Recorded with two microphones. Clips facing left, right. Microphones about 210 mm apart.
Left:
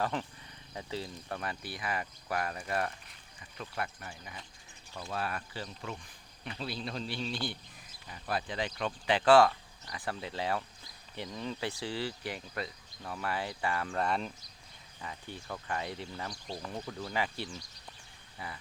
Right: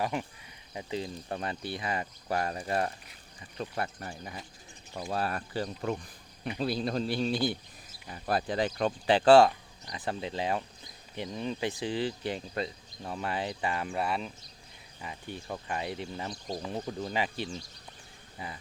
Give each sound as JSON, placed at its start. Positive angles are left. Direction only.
{"t": 0.0, "sound": "a man's voice", "side_deg": -10}
{"t": 14.0, "sound": "speech", "side_deg": -5}
{"t": 15.0, "sound": "speech", "side_deg": -15}